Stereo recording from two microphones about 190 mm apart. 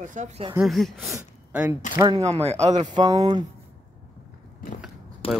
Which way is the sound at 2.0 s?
20° right (ahead or behind).